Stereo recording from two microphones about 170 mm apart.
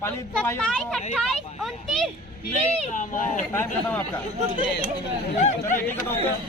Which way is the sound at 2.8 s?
45° left (ahead or behind).